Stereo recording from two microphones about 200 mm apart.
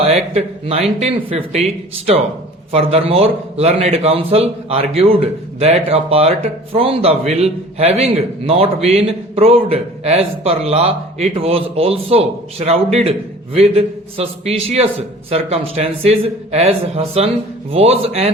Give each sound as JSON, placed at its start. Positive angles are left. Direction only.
{"t": 0.3, "sound": "a man's voice", "side_deg": -30}